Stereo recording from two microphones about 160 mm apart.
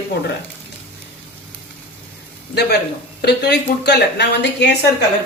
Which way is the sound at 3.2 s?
90° left.